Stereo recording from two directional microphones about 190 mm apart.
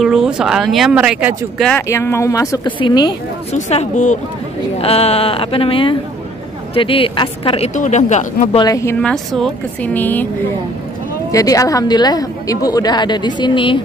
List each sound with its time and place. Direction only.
0.0 s speech: 5° right (ahead or behind)
1.8 s a woman's voice: 15° left (ahead or behind)
3.5 s a woman's voice: 40° left (ahead or behind)
8.5 s a woman's voice: 20° left (ahead or behind)
9.0 s a woman's voice: centre (ahead or behind)
11.3 s a woman's voice: 20° left (ahead or behind)